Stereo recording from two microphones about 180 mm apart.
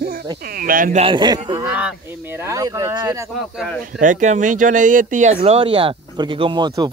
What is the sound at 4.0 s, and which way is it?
Speech, 45° right (ahead or behind).